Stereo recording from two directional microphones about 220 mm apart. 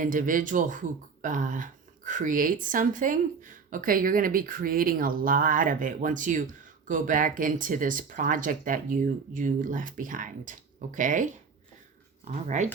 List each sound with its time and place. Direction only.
0.0 s speech: 40° right (ahead or behind)